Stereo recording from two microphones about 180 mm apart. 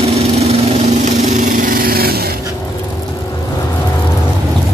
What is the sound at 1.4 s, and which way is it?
Lawn mower, 50° right (ahead or behind).